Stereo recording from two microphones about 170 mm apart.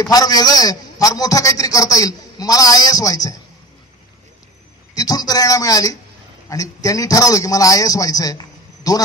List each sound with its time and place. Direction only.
0.0 s a man's voice: 20° left (ahead or behind)
4.9 s a man's voice: 20° left (ahead or behind)